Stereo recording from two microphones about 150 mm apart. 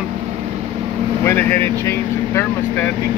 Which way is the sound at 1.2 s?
15° left (ahead or behind).